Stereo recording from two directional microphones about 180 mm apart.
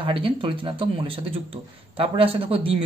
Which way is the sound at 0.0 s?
30° right (ahead or behind).